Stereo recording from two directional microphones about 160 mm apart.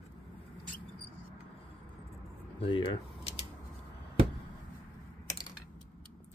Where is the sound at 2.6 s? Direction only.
30° left (ahead or behind).